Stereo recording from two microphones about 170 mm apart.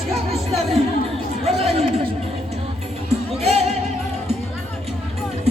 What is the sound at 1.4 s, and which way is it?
Chatter, 35° right (ahead or behind).